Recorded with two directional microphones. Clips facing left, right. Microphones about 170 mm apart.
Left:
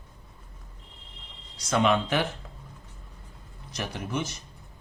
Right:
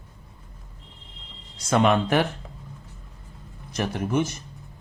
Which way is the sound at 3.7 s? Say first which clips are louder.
Right 7 dB; 50° right (ahead or behind).